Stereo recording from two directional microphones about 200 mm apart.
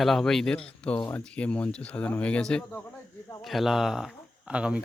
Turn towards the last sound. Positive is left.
turn(degrees=-5)  # may be behind; listen again after turning